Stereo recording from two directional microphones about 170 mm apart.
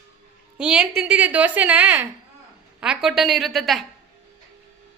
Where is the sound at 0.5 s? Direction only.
5° right (ahead or behind).